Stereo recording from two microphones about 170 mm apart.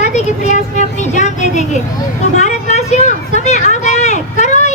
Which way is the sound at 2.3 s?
45° left (ahead or behind).